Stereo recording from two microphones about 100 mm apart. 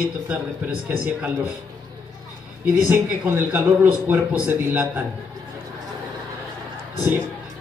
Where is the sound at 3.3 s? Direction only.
20° right (ahead or behind).